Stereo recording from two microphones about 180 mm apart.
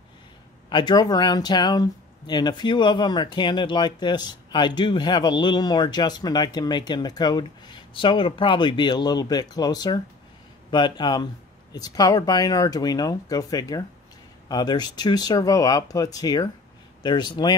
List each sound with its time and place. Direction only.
0.7 s speech: 25° left (ahead or behind)